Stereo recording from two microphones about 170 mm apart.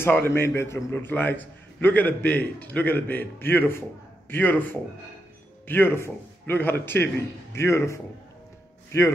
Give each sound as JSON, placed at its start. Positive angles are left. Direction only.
{"t": 0.0, "sound": "a man's voice", "side_deg": 15}